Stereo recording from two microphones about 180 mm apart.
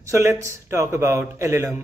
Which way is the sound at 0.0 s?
15° right (ahead or behind).